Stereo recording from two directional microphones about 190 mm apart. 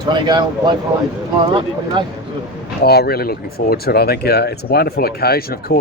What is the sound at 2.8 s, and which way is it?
Speech, 55° left (ahead or behind).